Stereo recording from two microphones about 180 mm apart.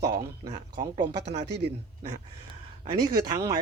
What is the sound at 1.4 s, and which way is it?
Speech, 70° right (ahead or behind).